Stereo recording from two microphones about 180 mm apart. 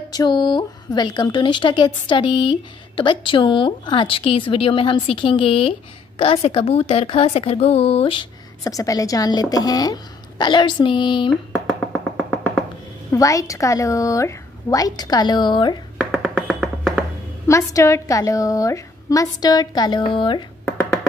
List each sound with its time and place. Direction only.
0.1 s speech: 25° left (ahead or behind)
11.5 s finger snapping: 5° left (ahead or behind)
13.1 s speech: 20° left (ahead or behind)
16.0 s music: 5° left (ahead or behind)
17.5 s speech: 15° left (ahead or behind)